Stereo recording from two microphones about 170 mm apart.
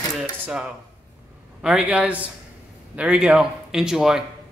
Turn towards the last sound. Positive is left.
turn(degrees=-5)  # may be behind; listen again after turning